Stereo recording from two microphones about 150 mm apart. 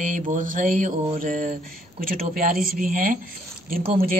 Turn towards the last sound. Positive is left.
turn(degrees=-75)  # may be behind; listen again after turning